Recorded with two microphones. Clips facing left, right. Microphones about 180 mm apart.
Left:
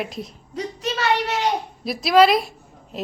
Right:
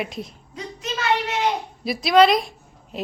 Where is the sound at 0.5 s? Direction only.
35° left (ahead or behind).